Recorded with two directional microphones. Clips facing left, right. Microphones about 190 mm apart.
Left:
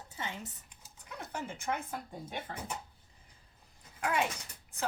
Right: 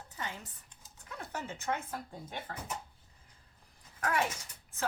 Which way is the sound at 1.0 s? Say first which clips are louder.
Even; 15° left (ahead or behind).